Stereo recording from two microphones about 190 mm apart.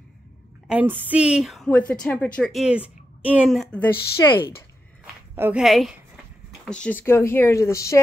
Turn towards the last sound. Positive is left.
turn(degrees=15)  # may be behind; listen again after turning